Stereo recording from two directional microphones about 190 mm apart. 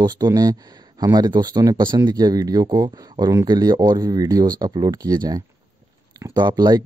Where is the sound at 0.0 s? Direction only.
20° right (ahead or behind).